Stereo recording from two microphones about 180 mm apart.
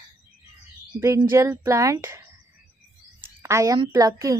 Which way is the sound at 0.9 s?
15° right (ahead or behind).